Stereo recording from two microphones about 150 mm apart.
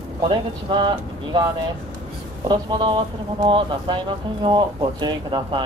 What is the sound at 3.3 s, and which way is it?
Speech, 30° right (ahead or behind).